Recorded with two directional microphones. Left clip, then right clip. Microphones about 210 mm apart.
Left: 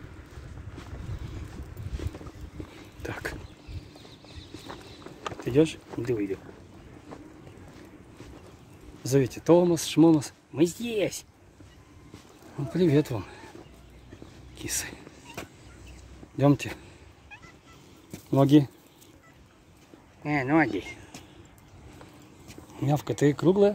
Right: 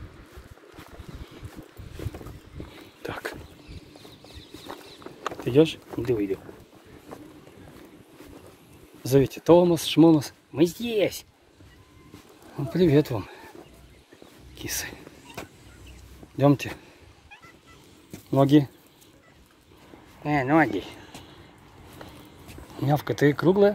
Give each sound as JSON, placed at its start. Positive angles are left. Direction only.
{"t": 3.0, "sound": "speech", "side_deg": 0}
{"t": 5.5, "sound": "speech", "side_deg": -10}
{"t": 9.0, "sound": "speech", "side_deg": -10}
{"t": 12.5, "sound": "speech", "side_deg": -5}
{"t": 14.6, "sound": "whispering", "side_deg": 0}
{"t": 16.3, "sound": "speech", "side_deg": 5}
{"t": 18.3, "sound": "speech", "side_deg": 10}
{"t": 20.2, "sound": "speech", "side_deg": 0}
{"t": 22.8, "sound": "speech", "side_deg": 5}